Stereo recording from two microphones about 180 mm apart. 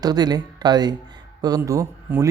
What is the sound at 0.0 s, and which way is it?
Speech, 20° right (ahead or behind).